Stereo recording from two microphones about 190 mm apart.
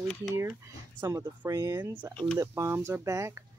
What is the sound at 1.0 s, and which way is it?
Speech, 15° right (ahead or behind).